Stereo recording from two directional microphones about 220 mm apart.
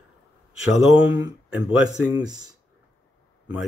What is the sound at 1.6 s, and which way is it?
Speech, 20° right (ahead or behind).